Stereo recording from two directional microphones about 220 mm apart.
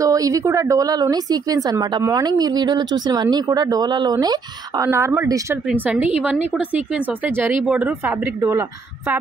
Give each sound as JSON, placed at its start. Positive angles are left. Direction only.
{"t": 0.0, "sound": "a woman's voice", "side_deg": -15}